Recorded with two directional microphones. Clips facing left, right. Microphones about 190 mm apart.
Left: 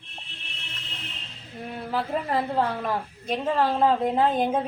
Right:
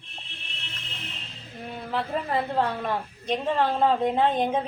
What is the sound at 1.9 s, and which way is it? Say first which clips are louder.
A woman's voice: left 1 dB; 5° left (ahead or behind).